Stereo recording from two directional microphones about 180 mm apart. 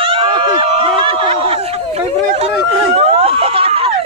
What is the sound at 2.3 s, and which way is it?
Speech, 35° right (ahead or behind).